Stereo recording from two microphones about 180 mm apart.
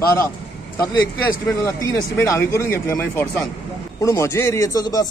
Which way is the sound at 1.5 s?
20° left (ahead or behind).